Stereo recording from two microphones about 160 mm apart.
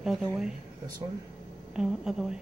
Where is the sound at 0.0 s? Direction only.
Centre (ahead or behind).